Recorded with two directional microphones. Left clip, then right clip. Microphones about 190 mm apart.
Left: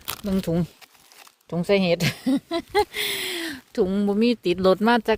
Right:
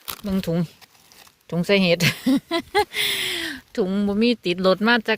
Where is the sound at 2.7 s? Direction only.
Centre (ahead or behind).